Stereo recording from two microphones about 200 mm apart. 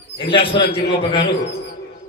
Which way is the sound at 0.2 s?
25° left (ahead or behind).